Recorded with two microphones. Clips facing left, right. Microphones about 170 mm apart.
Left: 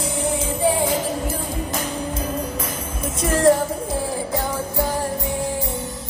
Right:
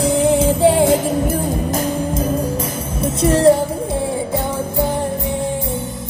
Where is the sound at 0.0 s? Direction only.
90° right.